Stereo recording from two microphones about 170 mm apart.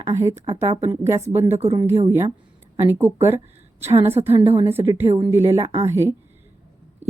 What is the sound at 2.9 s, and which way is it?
Speech, 15° right (ahead or behind).